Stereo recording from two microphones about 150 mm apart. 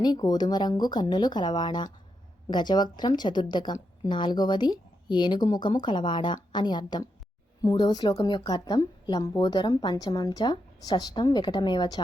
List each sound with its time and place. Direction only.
0.0 s a woman's voice: 25° left (ahead or behind)